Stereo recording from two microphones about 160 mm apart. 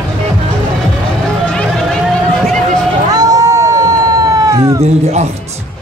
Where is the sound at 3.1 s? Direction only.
25° right (ahead or behind).